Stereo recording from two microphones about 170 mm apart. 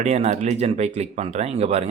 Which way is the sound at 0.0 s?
40° right (ahead or behind).